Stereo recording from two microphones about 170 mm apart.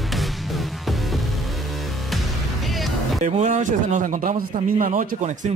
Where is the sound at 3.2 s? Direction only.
45° right (ahead or behind).